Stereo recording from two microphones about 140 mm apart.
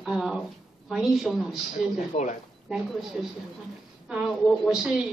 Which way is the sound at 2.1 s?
55° left (ahead or behind).